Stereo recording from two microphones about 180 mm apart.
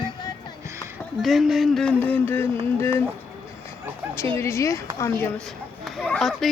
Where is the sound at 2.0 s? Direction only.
10° left (ahead or behind).